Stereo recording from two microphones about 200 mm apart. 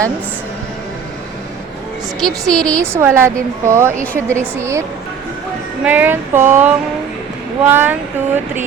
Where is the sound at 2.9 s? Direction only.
10° right (ahead or behind).